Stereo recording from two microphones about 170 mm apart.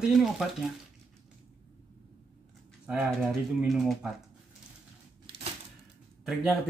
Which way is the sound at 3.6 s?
Centre (ahead or behind).